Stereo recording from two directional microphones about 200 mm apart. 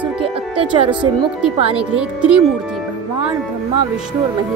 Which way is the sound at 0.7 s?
25° right (ahead or behind).